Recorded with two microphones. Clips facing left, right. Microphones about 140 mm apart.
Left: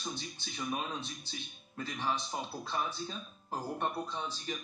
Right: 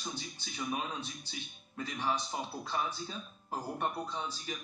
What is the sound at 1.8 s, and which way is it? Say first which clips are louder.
Speech: right 1 dB; 15° right (ahead or behind).